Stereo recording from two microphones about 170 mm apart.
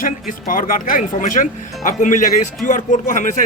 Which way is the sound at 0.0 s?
55° left (ahead or behind).